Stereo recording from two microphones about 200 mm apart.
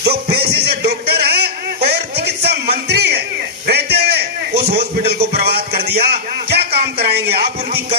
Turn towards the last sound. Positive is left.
turn(degrees=-55)  # may be behind; listen again after turning